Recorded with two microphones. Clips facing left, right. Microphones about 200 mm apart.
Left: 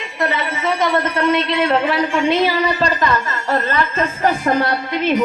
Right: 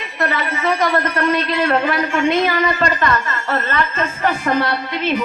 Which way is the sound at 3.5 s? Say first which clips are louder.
Left 2 dB; 35° left (ahead or behind).